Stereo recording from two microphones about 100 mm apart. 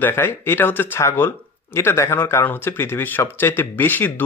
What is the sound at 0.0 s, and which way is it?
Speech, 20° left (ahead or behind).